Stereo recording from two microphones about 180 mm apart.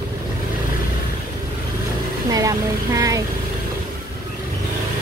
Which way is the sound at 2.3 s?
20° right (ahead or behind).